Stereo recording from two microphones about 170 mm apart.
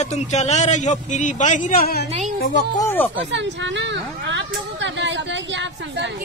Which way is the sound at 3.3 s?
90° right.